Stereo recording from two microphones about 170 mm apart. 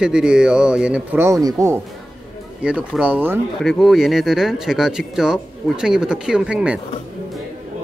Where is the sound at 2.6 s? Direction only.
5° right (ahead or behind).